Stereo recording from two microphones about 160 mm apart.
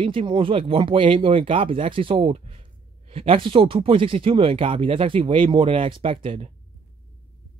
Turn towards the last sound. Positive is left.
turn(degrees=-35)  # may be behind; listen again after turning